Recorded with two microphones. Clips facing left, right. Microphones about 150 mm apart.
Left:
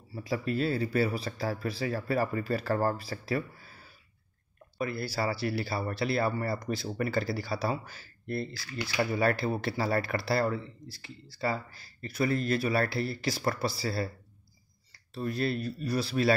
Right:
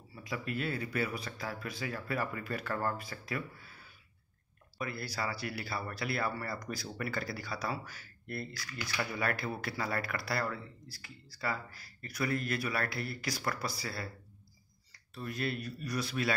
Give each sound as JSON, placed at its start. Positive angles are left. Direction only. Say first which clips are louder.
{"t": 0.1, "sound": "speech", "louder": "left 7 dB", "side_deg": 35}
{"t": 15.1, "sound": "speech", "louder": "left 6 dB", "side_deg": 35}